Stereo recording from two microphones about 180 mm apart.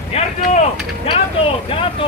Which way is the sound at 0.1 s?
35° left (ahead or behind).